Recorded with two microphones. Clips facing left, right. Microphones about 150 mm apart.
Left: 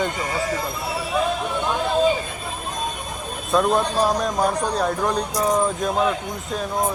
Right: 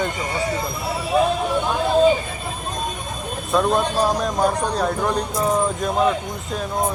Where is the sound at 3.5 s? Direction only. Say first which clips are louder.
Even; centre (ahead or behind).